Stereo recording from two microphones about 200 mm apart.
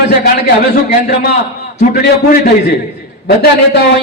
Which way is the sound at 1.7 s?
50° left (ahead or behind).